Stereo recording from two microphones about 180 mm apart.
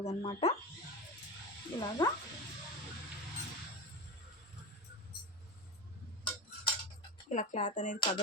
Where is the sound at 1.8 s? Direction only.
20° left (ahead or behind).